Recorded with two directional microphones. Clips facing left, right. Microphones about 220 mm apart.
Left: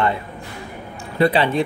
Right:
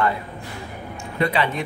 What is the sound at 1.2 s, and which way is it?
Speech, 30° left (ahead or behind).